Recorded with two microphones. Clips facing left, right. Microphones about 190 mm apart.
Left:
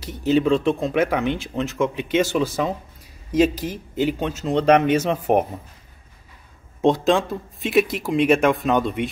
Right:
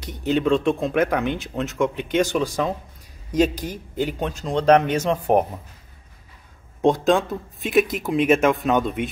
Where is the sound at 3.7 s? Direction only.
45° right (ahead or behind).